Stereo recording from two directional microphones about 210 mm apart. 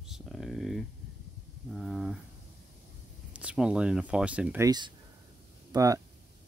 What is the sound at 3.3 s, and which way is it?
Speech, 5° right (ahead or behind).